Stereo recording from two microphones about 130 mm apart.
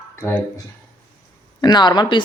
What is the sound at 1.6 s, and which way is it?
Speech, 35° left (ahead or behind).